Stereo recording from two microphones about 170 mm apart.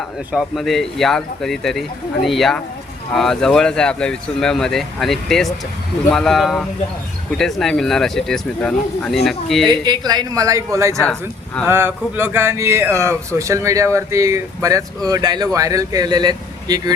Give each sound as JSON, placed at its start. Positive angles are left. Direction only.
{"t": 0.3, "sound": "speech", "side_deg": 0}
{"t": 9.6, "sound": "a man's voice", "side_deg": -25}
{"t": 10.9, "sound": "speech", "side_deg": 5}
{"t": 11.6, "sound": "speech", "side_deg": -15}